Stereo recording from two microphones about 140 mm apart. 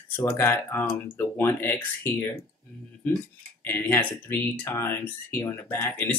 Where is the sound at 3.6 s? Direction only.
15° left (ahead or behind).